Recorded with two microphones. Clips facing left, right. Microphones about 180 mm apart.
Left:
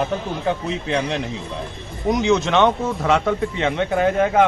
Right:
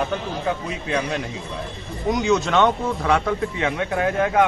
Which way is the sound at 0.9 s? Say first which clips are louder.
Left 1 dB; 30° left (ahead or behind).